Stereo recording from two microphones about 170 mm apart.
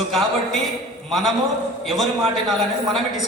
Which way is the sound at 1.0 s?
Centre (ahead or behind).